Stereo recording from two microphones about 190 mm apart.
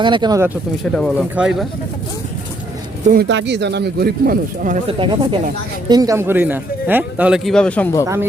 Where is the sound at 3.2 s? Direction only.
70° right (ahead or behind); by 4.8 s 50° right (ahead or behind).